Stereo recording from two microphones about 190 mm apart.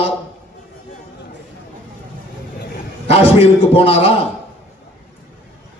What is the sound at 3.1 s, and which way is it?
A man's voice, 30° left (ahead or behind).